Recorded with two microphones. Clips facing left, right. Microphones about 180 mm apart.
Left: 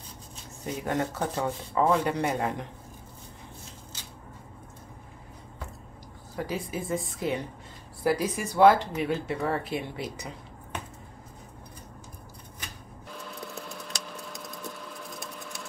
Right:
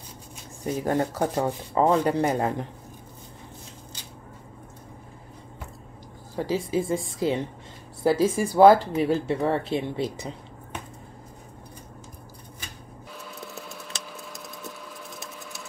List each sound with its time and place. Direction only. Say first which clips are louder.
0.8 s speech: right 4 dB; 35° right (ahead or behind)
6.3 s speech: right 7 dB; 25° right (ahead or behind)
13.1 s a sound: left 1 dB; 5° right (ahead or behind)